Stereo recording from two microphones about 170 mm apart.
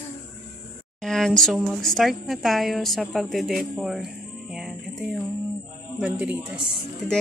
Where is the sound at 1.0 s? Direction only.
5° left (ahead or behind).